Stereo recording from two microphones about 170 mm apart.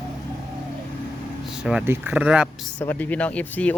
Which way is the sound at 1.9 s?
10° right (ahead or behind).